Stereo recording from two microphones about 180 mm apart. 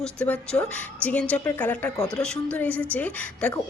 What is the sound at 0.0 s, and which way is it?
A woman's voice, 5° left (ahead or behind).